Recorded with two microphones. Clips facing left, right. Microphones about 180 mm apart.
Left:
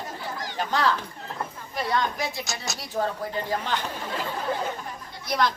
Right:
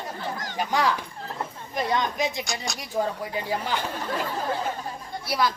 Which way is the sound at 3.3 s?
10° right (ahead or behind).